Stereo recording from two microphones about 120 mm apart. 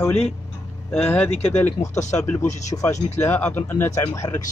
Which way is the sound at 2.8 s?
20° left (ahead or behind).